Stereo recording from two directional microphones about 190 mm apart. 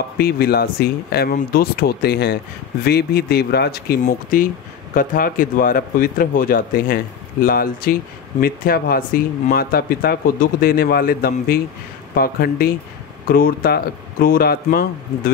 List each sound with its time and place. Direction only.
0.2 s speech: 55° left (ahead or behind)